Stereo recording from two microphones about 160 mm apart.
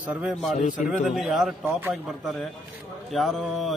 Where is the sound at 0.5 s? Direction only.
55° left (ahead or behind).